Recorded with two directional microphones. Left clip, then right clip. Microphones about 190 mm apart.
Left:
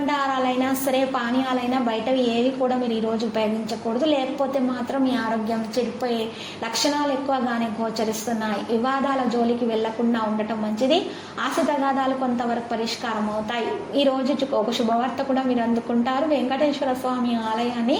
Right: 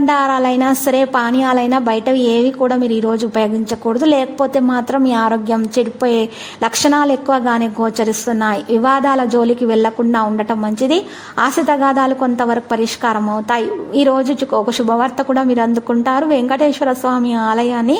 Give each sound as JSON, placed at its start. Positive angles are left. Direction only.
{"t": 0.0, "sound": "a woman's voice", "side_deg": -45}
{"t": 3.9, "sound": "a woman's voice", "side_deg": -50}
{"t": 7.3, "sound": "a woman's voice", "side_deg": -50}